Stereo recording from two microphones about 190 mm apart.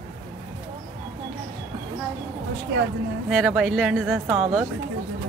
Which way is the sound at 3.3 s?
Centre (ahead or behind).